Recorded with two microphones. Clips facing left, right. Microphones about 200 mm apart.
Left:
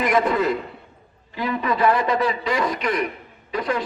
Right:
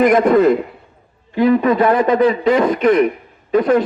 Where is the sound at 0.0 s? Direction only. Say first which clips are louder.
Right 9 dB; 45° right (ahead or behind).